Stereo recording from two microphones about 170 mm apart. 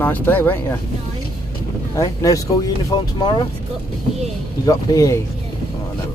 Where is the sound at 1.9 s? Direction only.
20° left (ahead or behind).